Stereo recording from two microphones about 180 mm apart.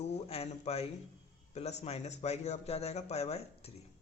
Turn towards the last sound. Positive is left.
turn(degrees=35)  # may be behind; listen again after turning